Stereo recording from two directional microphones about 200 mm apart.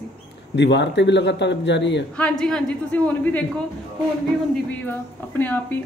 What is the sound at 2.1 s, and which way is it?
A man's voice, 5° left (ahead or behind).